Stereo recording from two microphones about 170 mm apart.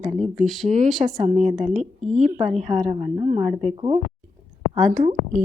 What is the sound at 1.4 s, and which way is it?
Speech, 45° right (ahead or behind).